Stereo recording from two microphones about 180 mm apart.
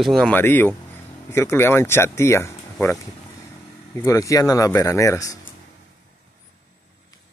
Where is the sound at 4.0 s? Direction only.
15° left (ahead or behind).